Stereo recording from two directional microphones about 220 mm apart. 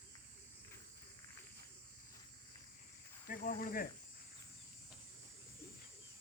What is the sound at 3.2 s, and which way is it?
Cricket, 40° left (ahead or behind).